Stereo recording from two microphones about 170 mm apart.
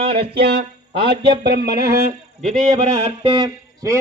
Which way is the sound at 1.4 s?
75° right (ahead or behind).